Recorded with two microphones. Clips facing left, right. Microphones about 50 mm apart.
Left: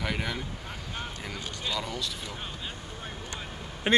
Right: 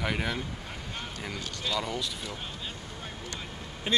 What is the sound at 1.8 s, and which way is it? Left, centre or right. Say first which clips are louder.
Speech: right 1 dB; centre.